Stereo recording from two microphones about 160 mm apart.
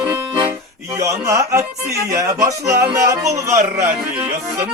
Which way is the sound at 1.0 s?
20° right (ahead or behind).